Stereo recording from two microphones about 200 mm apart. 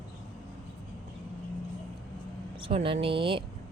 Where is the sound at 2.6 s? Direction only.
25° right (ahead or behind).